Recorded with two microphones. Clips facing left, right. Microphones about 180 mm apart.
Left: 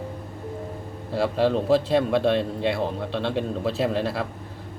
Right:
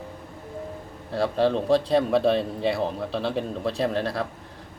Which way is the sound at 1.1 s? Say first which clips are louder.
Left 1 dB; 5° left (ahead or behind).